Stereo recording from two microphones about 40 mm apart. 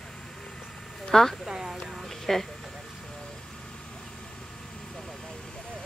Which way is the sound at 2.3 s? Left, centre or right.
Centre.